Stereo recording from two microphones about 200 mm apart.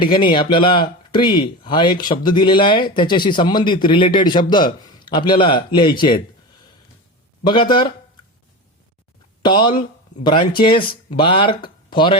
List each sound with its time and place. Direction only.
0.0 s speech: 25° left (ahead or behind)
7.4 s speech: 25° left (ahead or behind)
9.4 s speech: 25° left (ahead or behind)